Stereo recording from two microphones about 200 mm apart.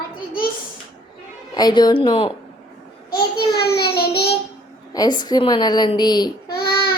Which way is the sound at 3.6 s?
55° left (ahead or behind).